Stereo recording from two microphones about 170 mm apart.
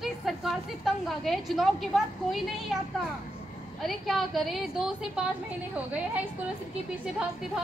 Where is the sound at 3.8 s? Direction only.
Centre (ahead or behind).